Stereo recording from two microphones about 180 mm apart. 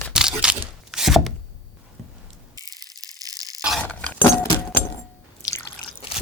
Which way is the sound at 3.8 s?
5° left (ahead or behind).